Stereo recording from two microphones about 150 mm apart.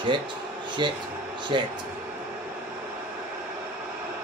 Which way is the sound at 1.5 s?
35° right (ahead or behind).